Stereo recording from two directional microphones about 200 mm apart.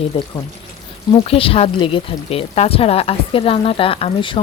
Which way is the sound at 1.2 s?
30° left (ahead or behind).